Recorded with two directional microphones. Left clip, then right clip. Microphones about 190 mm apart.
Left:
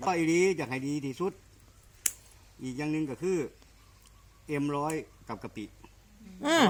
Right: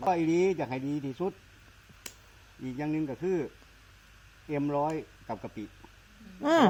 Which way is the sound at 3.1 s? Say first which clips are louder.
Even; 10° left (ahead or behind).